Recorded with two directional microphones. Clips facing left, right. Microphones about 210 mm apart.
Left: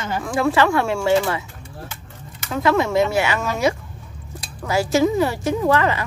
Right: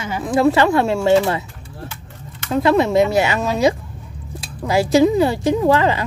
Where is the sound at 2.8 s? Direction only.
15° right (ahead or behind).